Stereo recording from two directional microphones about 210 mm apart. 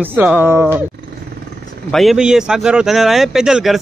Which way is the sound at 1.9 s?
Centre (ahead or behind).